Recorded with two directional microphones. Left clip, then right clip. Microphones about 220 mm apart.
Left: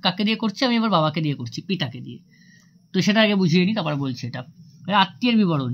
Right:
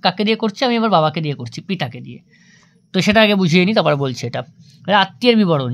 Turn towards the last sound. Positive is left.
turn(degrees=-35)  # may be behind; listen again after turning